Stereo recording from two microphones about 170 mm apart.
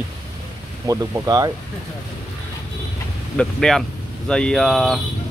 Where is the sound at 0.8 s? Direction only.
20° right (ahead or behind).